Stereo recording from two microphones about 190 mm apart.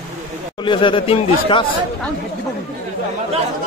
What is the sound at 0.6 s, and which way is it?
Speech, 25° left (ahead or behind).